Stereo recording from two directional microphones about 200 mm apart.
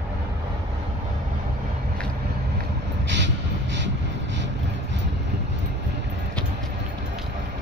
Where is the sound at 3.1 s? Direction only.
60° right (ahead or behind).